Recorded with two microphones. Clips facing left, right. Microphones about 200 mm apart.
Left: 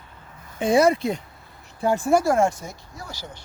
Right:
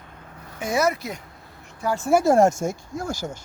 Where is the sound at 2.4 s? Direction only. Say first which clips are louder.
Right 4 dB; 45° right (ahead or behind).